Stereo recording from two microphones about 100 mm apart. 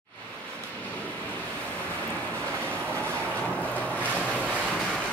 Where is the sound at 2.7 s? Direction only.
15° left (ahead or behind).